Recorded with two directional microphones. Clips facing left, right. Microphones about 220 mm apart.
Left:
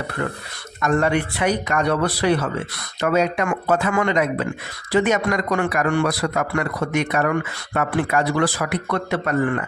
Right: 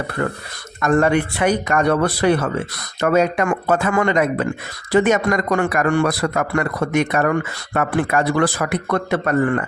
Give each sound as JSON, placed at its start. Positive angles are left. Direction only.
{"t": 0.8, "sound": "a man's voice", "side_deg": -50}